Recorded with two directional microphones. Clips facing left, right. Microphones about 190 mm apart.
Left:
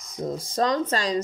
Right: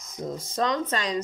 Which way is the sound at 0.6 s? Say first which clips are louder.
Left 3 dB; 35° left (ahead or behind).